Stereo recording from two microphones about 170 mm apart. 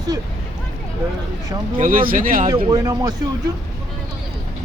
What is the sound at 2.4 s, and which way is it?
Speech, 25° right (ahead or behind).